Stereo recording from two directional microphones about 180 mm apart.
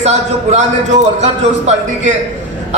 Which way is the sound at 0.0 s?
35° right (ahead or behind).